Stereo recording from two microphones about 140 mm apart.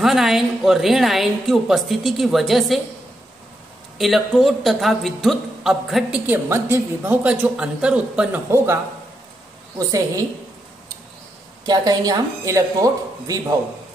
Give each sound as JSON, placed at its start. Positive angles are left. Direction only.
{"t": 0.0, "sound": "a man's voice", "side_deg": 0}
{"t": 4.0, "sound": "a man's voice", "side_deg": 0}
{"t": 8.5, "sound": "speech", "side_deg": -20}
{"t": 9.8, "sound": "a woman's voice", "side_deg": -25}
{"t": 11.6, "sound": "a woman's voice", "side_deg": -30}